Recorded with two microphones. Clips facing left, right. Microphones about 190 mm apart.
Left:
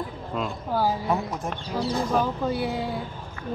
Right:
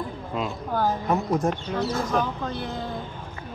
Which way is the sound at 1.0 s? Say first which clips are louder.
Right 4 dB; 45° right (ahead or behind).